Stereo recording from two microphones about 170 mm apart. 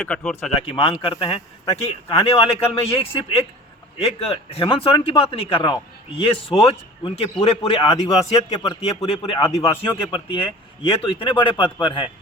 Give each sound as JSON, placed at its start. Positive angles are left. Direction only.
{"t": 0.1, "sound": "speech", "side_deg": 5}
{"t": 0.6, "sound": "a man's voice", "side_deg": 30}